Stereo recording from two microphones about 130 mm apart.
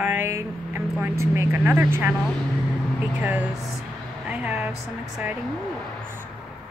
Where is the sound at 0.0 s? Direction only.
15° right (ahead or behind).